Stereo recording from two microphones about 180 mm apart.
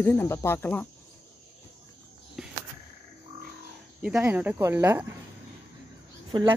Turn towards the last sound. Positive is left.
turn(degrees=-25)  # may be behind; listen again after turning